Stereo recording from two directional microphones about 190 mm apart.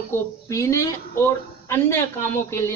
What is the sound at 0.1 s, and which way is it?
Speech, 15° left (ahead or behind).